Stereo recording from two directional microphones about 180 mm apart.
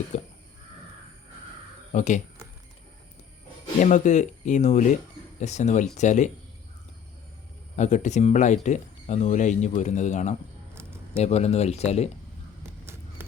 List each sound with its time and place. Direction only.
0.1 s speech: 40° left (ahead or behind)
1.9 s speech: 45° left (ahead or behind)
3.8 s speech: 40° left (ahead or behind)
7.8 s speech: 40° left (ahead or behind)
12.8 s a sound: 15° right (ahead or behind)